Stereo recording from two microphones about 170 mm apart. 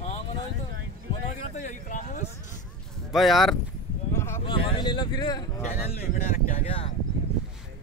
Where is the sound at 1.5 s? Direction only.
45° left (ahead or behind).